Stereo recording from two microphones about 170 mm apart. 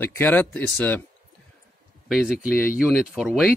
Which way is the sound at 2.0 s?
Centre (ahead or behind).